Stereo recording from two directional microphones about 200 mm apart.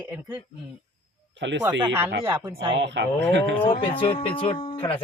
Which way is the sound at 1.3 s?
65° right (ahead or behind).